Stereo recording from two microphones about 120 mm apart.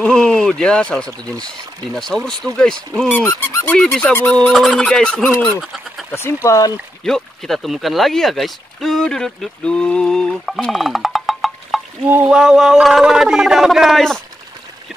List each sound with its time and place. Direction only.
0.0 s a sound: 10° left (ahead or behind)
2.0 s speech: 5° left (ahead or behind); by 3.7 s 25° left (ahead or behind)
3.7 s speech: 5° left (ahead or behind)
5.6 s bird: centre (ahead or behind)
6.1 s speech: 20° left (ahead or behind)
7.1 s speech: 5° left (ahead or behind)